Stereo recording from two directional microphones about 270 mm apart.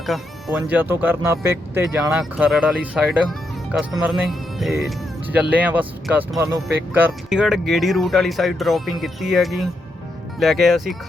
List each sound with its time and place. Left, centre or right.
0.0 s speech: centre